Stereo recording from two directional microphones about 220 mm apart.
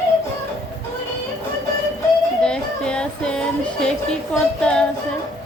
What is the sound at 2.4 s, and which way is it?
Children playing, 5° left (ahead or behind).